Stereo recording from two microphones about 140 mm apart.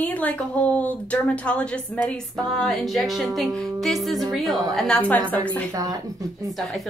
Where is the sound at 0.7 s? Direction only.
10° left (ahead or behind).